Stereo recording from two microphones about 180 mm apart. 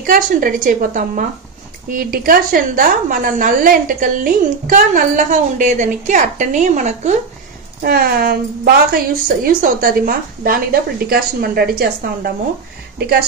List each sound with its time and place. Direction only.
0.0 s a woman's voice: 50° right (ahead or behind)
7.8 s a woman's voice: 55° right (ahead or behind)